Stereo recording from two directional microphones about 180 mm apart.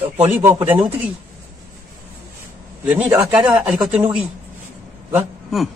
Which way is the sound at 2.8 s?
10° right (ahead or behind).